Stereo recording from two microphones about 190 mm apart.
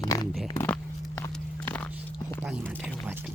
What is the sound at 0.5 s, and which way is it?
Walk, 10° left (ahead or behind).